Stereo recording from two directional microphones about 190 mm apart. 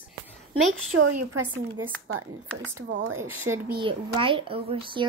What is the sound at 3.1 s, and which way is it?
Speech, 15° right (ahead or behind).